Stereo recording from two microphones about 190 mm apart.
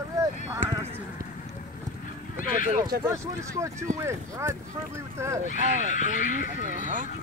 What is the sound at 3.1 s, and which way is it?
Speech, 15° right (ahead or behind).